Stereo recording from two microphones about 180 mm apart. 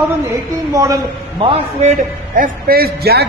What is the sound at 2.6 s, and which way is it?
Speech, 55° right (ahead or behind).